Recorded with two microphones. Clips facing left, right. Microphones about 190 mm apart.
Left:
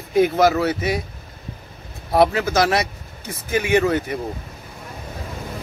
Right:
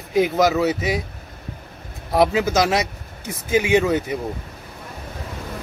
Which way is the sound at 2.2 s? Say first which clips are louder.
Left 1 dB; 15° right (ahead or behind).